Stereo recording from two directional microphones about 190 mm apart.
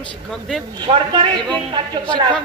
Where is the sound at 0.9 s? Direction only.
25° right (ahead or behind).